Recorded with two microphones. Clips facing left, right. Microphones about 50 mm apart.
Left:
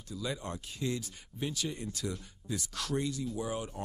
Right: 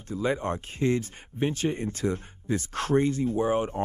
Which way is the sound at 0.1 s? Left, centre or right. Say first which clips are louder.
Right 10 dB; right.